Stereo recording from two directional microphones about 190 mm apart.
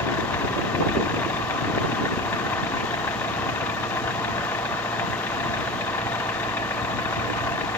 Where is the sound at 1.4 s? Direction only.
10° left (ahead or behind).